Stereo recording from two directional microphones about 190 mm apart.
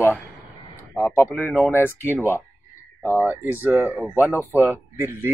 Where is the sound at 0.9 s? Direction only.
10° left (ahead or behind).